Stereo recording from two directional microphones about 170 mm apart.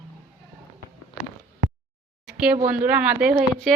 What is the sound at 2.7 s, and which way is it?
Speech, 10° right (ahead or behind).